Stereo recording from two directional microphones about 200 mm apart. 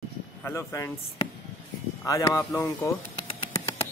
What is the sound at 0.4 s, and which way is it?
Speech, 10° left (ahead or behind).